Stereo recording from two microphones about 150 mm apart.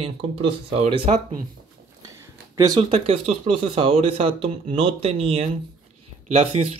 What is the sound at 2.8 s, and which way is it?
Speech, 40° right (ahead or behind).